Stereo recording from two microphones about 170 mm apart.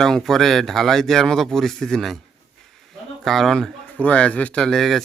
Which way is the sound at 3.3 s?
Centre (ahead or behind).